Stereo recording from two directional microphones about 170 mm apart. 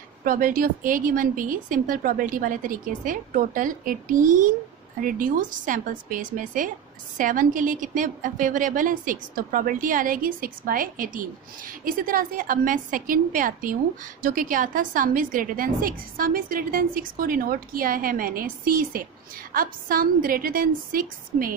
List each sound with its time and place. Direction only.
0.2 s a woman's voice: 55° right (ahead or behind)